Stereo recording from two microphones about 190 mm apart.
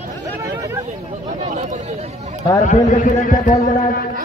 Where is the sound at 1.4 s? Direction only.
40° right (ahead or behind).